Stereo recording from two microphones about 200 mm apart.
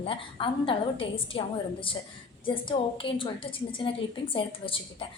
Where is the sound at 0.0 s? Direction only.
25° left (ahead or behind).